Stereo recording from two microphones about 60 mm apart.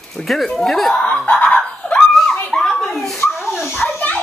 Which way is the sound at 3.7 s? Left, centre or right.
Left.